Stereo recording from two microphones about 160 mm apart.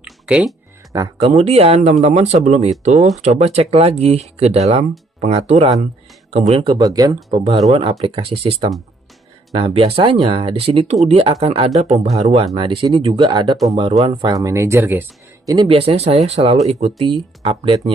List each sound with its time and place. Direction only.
0.0 s music: 5° right (ahead or behind)
0.9 s speech: 30° right (ahead or behind)
1.3 s speech: 40° right (ahead or behind); by 7.2 s 25° right (ahead or behind)
7.2 s speech: 35° right (ahead or behind)
14.3 s speech: 20° right (ahead or behind)
15.5 s speech: 30° right (ahead or behind)